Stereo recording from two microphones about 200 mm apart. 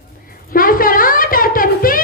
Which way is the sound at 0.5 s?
45° left (ahead or behind).